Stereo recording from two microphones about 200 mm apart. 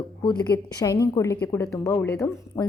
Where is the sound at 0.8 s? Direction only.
20° left (ahead or behind).